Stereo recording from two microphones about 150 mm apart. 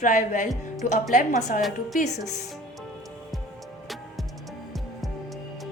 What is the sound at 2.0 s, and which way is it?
Speech, 50° left (ahead or behind).